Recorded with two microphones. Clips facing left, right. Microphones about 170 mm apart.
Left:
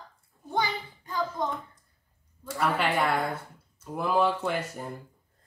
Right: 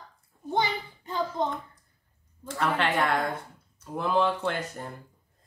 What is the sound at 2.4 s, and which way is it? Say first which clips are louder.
Speech: even; 10° left (ahead or behind).